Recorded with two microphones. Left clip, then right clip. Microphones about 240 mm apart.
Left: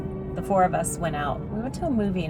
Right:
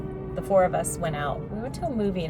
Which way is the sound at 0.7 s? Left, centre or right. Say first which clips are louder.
Left 1 dB; centre.